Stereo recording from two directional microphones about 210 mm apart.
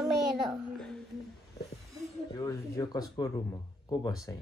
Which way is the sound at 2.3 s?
15° left (ahead or behind).